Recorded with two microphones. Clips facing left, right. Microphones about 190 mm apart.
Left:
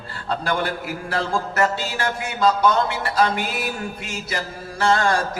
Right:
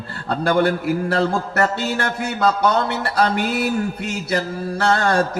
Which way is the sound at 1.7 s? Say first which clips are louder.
Right 3 dB; 60° right (ahead or behind).